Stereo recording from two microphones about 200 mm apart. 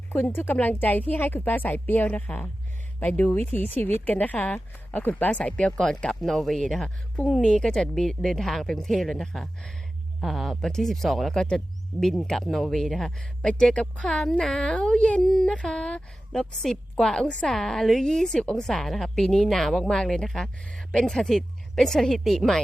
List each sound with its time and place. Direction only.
0.1 s a woman's voice: 10° left (ahead or behind)